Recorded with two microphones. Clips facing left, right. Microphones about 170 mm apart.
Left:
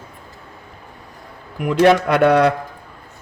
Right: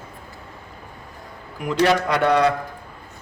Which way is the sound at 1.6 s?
55° left (ahead or behind).